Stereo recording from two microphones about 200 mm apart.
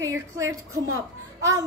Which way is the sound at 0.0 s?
15° right (ahead or behind).